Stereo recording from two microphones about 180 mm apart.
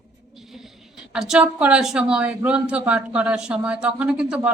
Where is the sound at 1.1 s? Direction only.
5° right (ahead or behind).